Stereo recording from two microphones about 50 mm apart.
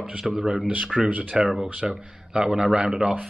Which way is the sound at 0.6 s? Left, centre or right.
Right.